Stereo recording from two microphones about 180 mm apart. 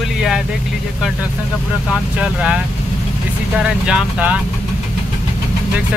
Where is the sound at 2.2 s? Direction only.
5° right (ahead or behind).